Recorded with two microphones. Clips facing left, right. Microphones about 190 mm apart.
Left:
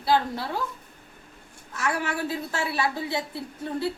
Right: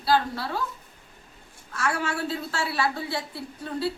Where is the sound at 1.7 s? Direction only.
20° left (ahead or behind).